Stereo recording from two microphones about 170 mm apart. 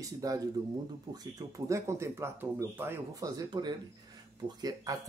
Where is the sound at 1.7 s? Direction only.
15° right (ahead or behind).